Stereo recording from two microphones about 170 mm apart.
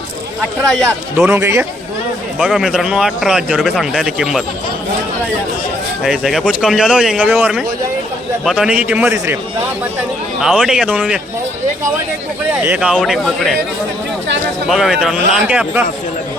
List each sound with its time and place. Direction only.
1.1 s a man's voice: 10° right (ahead or behind)
2.4 s a man's voice: centre (ahead or behind)
6.0 s a man's voice: centre (ahead or behind); by 9.4 s 15° right (ahead or behind)
10.4 s a man's voice: 5° right (ahead or behind)
12.5 s a man's voice: 10° right (ahead or behind)
14.7 s a man's voice: centre (ahead or behind)